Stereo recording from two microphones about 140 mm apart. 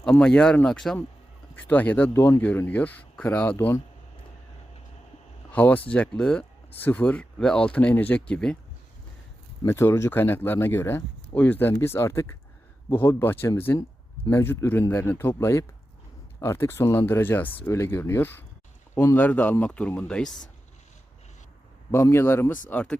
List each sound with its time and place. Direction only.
0.0 s speech: 10° left (ahead or behind)
5.5 s speech: 10° left (ahead or behind)
9.6 s speech: 20° left (ahead or behind)
21.9 s speech: 20° left (ahead or behind)